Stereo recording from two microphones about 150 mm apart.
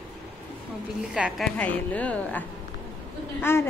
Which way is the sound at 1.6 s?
10° left (ahead or behind).